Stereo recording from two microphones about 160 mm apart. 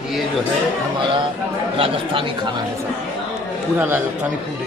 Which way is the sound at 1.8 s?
35° right (ahead or behind).